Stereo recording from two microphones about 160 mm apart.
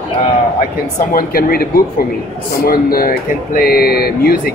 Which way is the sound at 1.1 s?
65° left (ahead or behind).